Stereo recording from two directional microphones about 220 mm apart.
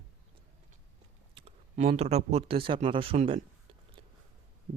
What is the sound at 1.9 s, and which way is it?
Speech, 30° right (ahead or behind).